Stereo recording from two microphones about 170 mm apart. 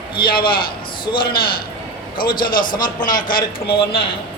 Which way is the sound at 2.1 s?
25° left (ahead or behind).